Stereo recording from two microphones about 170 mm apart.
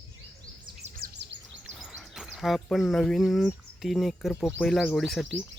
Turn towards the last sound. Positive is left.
turn(degrees=0)  # may be behind; listen again after turning